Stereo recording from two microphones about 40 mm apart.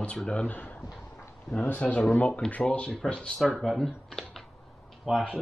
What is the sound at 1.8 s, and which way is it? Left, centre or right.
Speech, left.